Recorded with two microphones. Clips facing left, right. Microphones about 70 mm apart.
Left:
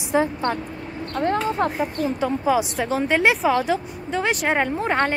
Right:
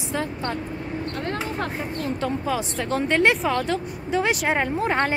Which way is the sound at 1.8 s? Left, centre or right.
Centre.